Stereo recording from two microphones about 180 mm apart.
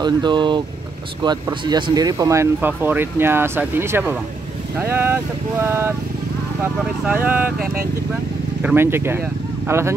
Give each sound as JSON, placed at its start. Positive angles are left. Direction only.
{"t": 0.0, "sound": "speech", "side_deg": -25}
{"t": 8.6, "sound": "speech", "side_deg": -10}